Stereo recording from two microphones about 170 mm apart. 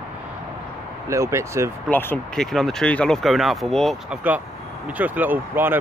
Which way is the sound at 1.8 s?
10° left (ahead or behind).